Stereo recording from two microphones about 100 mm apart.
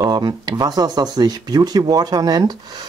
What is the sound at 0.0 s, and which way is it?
Speech, 45° right (ahead or behind).